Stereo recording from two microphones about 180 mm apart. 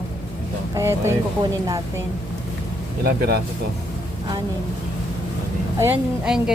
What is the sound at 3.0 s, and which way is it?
Speech, 60° right (ahead or behind).